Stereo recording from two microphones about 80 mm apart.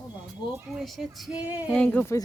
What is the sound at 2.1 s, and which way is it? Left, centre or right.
Speech, left.